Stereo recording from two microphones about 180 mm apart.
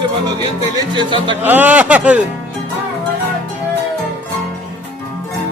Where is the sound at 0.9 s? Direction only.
25° right (ahead or behind).